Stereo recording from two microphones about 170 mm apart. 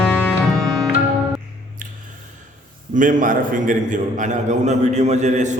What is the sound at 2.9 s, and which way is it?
A man's voice, 50° right (ahead or behind).